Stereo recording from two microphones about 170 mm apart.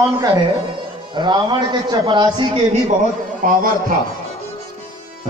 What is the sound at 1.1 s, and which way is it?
A man's voice, 25° right (ahead or behind).